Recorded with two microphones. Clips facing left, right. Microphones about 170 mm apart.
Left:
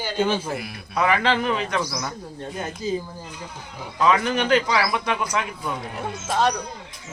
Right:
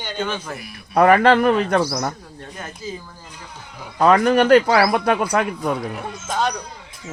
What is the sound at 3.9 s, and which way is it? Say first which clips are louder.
Speech: right 6 dB; 50° right (ahead or behind).